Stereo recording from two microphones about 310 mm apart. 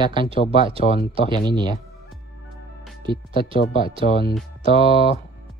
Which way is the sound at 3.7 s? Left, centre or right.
Centre.